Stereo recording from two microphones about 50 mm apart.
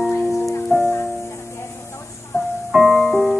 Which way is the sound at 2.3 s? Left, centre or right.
Left.